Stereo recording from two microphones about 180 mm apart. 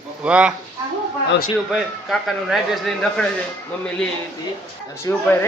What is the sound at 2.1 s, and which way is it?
A man's voice, centre (ahead or behind).